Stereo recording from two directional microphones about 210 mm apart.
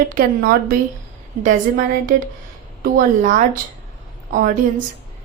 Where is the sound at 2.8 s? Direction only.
40° right (ahead or behind).